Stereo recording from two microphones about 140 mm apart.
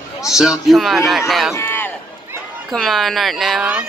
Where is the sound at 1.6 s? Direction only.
15° left (ahead or behind).